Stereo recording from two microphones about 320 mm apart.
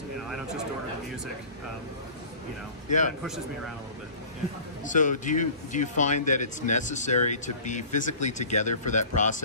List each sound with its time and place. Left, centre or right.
4.8 s speech: left